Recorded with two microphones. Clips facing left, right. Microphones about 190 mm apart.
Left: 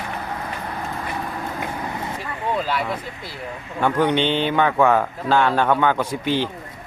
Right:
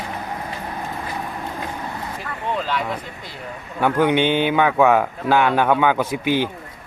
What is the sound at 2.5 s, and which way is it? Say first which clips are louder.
Speech: even; 5° left (ahead or behind).